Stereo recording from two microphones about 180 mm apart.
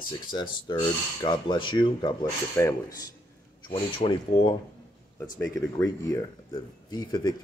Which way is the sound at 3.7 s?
30° left (ahead or behind).